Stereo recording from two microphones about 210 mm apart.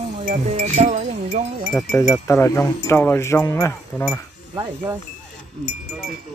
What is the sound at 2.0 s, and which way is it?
Speech, 15° left (ahead or behind).